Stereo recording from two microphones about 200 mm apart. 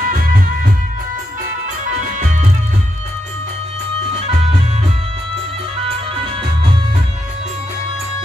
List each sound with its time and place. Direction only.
0.0 s music: 45° right (ahead or behind)